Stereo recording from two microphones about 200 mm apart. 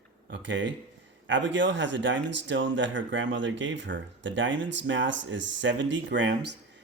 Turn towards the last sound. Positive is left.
turn(degrees=-65)  # may be behind; listen again after turning